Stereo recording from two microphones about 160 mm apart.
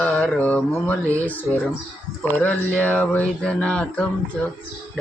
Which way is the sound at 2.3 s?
10° left (ahead or behind).